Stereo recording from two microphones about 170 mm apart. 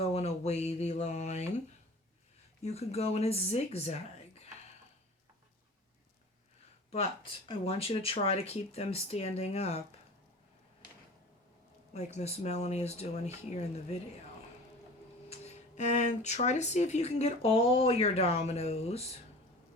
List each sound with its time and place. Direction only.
0.0 s a sound: 35° left (ahead or behind)
2.6 s speech: 40° left (ahead or behind)
6.9 s speech: 35° left (ahead or behind)
11.9 s speech: 40° left (ahead or behind)
15.3 s speech: 40° left (ahead or behind)